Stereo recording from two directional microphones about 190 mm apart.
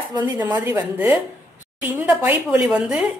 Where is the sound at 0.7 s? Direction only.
10° right (ahead or behind).